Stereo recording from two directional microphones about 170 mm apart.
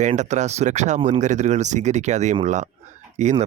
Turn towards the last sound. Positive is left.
turn(degrees=-40)  # may be behind; listen again after turning